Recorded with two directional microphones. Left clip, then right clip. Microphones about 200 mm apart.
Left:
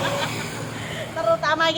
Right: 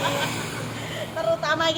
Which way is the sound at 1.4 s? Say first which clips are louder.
Left 2 dB; 30° left (ahead or behind).